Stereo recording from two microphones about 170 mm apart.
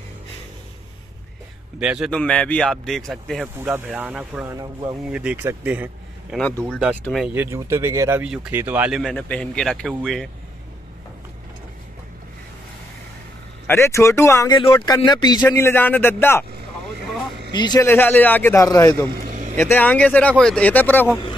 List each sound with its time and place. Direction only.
1.8 s speech: 5° right (ahead or behind)
2.0 s speech: 5° left (ahead or behind)
3.5 s speech: 15° right (ahead or behind)
4.6 s speech: 25° right (ahead or behind)
5.1 s speech: 5° right (ahead or behind)
6.3 s speech: 5° left (ahead or behind)
7.3 s speech: 15° right (ahead or behind); by 10.3 s centre (ahead or behind)
13.7 s speech: 15° left (ahead or behind)
15.0 s a man's voice: 25° left (ahead or behind)
15.4 s speech: 15° left (ahead or behind)
17.5 s speech: 25° left (ahead or behind)
17.8 s speech: 10° left (ahead or behind)